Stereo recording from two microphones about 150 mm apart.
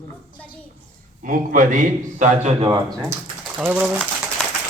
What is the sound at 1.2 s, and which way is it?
A man's voice, 60° right (ahead or behind).